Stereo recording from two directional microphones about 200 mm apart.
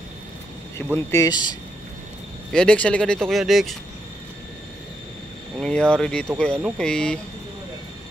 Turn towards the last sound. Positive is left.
turn(degrees=5)  # may be behind; listen again after turning